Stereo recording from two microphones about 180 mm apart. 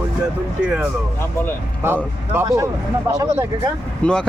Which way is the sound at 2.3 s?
15° right (ahead or behind).